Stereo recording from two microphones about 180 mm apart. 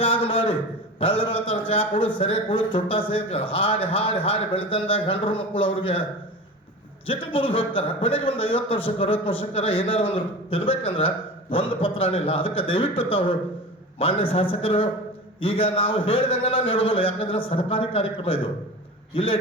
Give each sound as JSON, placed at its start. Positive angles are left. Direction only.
{"t": 0.0, "sound": "a sound", "side_deg": 30}
{"t": 0.9, "sound": "a man's voice", "side_deg": 30}
{"t": 7.1, "sound": "a man's voice", "side_deg": 30}